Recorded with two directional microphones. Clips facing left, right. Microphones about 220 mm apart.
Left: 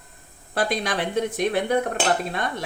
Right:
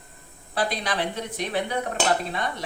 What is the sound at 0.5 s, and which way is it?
Speech, 50° left (ahead or behind).